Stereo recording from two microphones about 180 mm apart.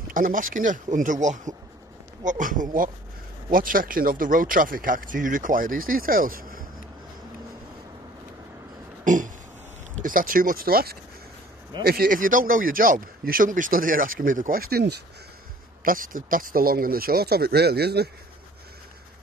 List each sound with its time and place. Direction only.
0.1 s speech: 50° right (ahead or behind)
9.0 s burping: 45° right (ahead or behind)
10.0 s speech: 50° right (ahead or behind)
15.8 s speech: 50° right (ahead or behind)